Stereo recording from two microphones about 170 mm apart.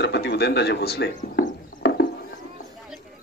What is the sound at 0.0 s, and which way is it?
Speech, 75° left (ahead or behind).